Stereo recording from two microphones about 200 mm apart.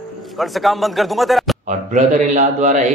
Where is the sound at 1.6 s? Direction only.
35° right (ahead or behind).